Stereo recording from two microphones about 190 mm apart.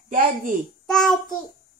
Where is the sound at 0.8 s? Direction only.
Centre (ahead or behind).